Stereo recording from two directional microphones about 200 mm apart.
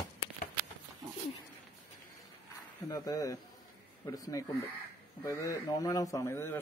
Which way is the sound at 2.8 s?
15° left (ahead or behind).